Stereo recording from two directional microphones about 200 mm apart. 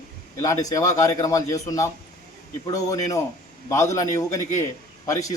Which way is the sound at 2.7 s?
15° left (ahead or behind).